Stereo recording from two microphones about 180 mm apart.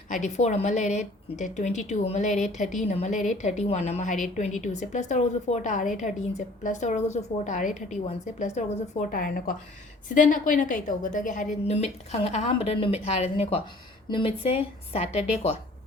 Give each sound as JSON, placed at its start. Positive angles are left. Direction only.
{"t": 0.1, "sound": "a woman's voice", "side_deg": 40}